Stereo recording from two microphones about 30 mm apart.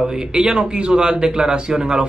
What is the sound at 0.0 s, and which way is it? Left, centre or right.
Speech, right.